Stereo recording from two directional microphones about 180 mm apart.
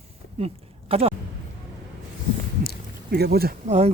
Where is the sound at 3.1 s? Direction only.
60° right (ahead or behind).